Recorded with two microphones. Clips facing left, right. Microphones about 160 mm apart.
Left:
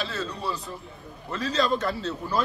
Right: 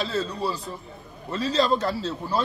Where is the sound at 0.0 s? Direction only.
35° right (ahead or behind).